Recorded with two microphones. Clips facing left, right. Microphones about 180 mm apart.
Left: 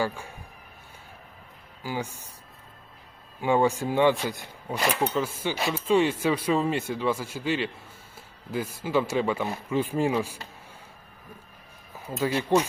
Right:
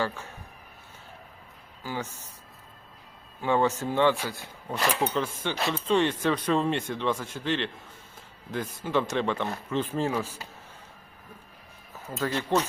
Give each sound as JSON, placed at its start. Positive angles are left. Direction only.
{"t": 0.0, "sound": "speech", "side_deg": 10}
{"t": 1.8, "sound": "speech", "side_deg": 10}
{"t": 3.4, "sound": "speech", "side_deg": 10}
{"t": 11.9, "sound": "speech", "side_deg": 10}